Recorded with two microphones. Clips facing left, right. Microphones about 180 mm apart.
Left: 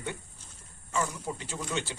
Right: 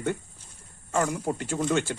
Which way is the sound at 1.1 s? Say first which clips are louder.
Right 8 dB; 55° right (ahead or behind).